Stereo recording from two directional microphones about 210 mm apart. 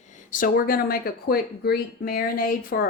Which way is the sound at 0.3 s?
40° left (ahead or behind).